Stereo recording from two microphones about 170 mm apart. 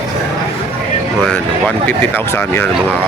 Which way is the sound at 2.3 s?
15° left (ahead or behind).